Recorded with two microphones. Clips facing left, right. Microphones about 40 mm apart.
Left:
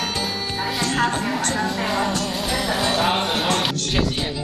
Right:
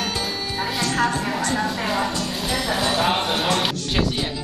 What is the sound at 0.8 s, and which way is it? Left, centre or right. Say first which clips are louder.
Speech: even; left.